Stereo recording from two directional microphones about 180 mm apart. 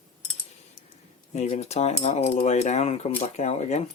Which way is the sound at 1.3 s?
40° left (ahead or behind).